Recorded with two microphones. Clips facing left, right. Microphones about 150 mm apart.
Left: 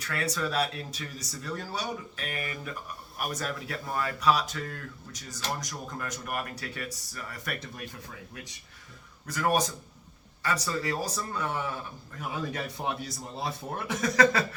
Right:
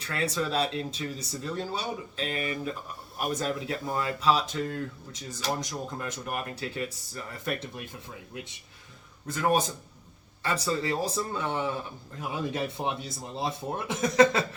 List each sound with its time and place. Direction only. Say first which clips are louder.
0.0 s speech: right 2 dB; 25° right (ahead or behind)
9.2 s speech: right 1 dB; 25° right (ahead or behind)